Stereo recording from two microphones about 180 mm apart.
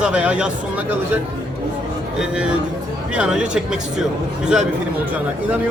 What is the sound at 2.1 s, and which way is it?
Speech, 5° right (ahead or behind).